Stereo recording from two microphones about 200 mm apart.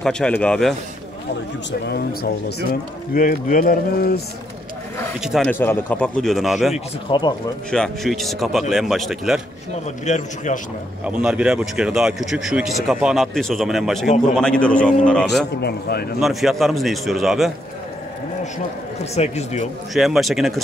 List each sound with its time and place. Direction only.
0.0 s speech: 5° left (ahead or behind)
1.7 s speech: 50° left (ahead or behind)
5.2 s speech: centre (ahead or behind)
5.5 s speech: 10° left (ahead or behind)
6.7 s speech: 25° left (ahead or behind)
7.7 s speech: centre (ahead or behind)
10.0 s a man's voice: 35° left (ahead or behind)
11.1 s speech: 5° right (ahead or behind)
15.6 s speech: 50° left (ahead or behind)
16.2 s speech: centre (ahead or behind)
19.1 s a man's voice: 35° left (ahead or behind)
19.9 s speech: centre (ahead or behind)